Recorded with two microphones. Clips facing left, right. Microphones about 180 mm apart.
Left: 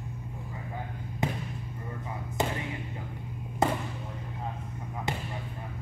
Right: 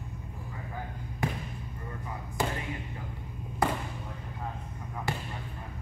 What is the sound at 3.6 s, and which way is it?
Basketball bounce, 25° left (ahead or behind).